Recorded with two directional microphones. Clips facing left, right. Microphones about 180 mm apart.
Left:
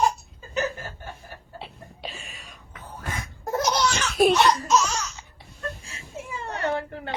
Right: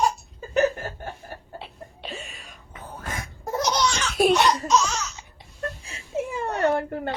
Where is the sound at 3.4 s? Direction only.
Centre (ahead or behind).